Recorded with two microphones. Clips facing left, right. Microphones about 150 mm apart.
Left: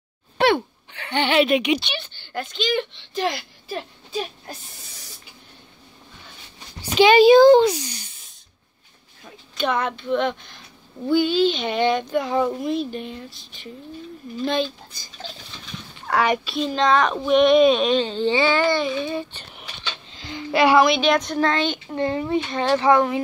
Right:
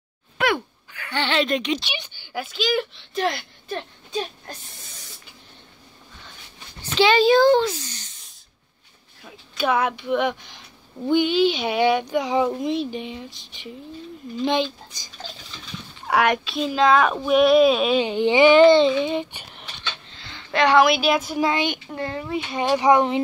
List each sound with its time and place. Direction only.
0.4 s hiccup: 25° left (ahead or behind); by 1.8 s 10° left (ahead or behind)
2.0 s speech: 10° right (ahead or behind)
6.8 s speech: 15° left (ahead or behind)
9.2 s speech: 5° right (ahead or behind)
16.1 s speech: centre (ahead or behind); by 19.4 s 20° right (ahead or behind)
19.8 s music: 15° left (ahead or behind)
20.8 s speech: 5° right (ahead or behind)
21.8 s speech: centre (ahead or behind)
22.3 s speech: 10° right (ahead or behind)